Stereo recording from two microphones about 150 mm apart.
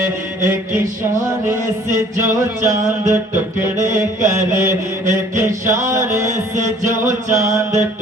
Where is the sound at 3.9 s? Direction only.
55° right (ahead or behind).